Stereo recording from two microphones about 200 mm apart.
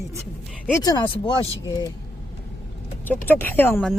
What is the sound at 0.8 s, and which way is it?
Speech, 20° left (ahead or behind).